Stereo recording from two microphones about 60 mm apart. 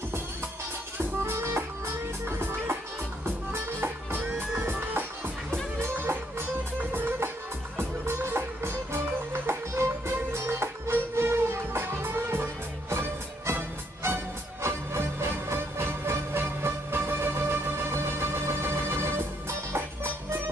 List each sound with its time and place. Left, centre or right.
0.9 s music: right